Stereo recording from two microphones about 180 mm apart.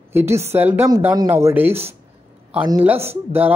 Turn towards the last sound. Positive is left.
turn(degrees=-10)  # may be behind; listen again after turning